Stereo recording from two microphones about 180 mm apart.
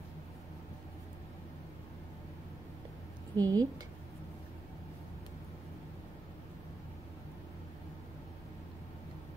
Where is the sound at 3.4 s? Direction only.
20° right (ahead or behind).